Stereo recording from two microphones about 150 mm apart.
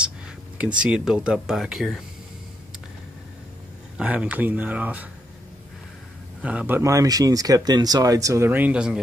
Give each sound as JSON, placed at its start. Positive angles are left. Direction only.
{"t": 0.7, "sound": "speech", "side_deg": -5}
{"t": 4.0, "sound": "speech", "side_deg": -10}
{"t": 6.4, "sound": "speech", "side_deg": -10}